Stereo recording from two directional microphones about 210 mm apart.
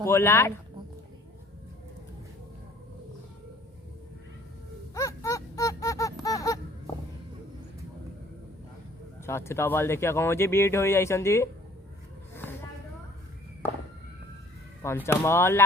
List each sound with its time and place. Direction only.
0.0 s speech: 10° left (ahead or behind)
4.9 s a sound: 15° left (ahead or behind)
9.2 s speech: 10° left (ahead or behind)
12.3 s vehicle: 10° left (ahead or behind)
14.8 s speech: 10° left (ahead or behind)